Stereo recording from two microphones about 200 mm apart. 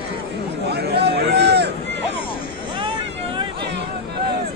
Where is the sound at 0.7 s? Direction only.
55° right (ahead or behind).